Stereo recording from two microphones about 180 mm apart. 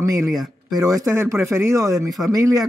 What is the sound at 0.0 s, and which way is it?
Speech, 20° right (ahead or behind).